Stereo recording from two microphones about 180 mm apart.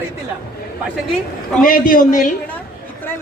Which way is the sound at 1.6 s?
50° left (ahead or behind).